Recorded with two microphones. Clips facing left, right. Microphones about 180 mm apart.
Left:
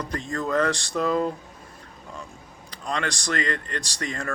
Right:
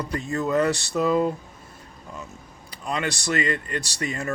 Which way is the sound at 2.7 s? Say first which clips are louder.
Right 1 dB; 10° right (ahead or behind).